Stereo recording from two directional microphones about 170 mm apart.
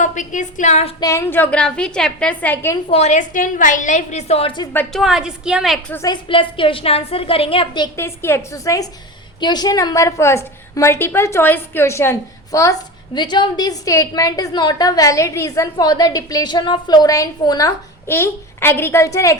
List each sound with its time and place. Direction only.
0.0 s a woman's voice: 50° left (ahead or behind)
0.9 s a woman's voice: 20° left (ahead or behind)
2.9 s a woman's voice: 40° left (ahead or behind)
4.7 s a woman's voice: 5° left (ahead or behind)
5.9 s a woman's voice: 20° left (ahead or behind)
6.2 s a woman's voice: 30° left (ahead or behind)
7.9 s a woman's voice: 15° left (ahead or behind)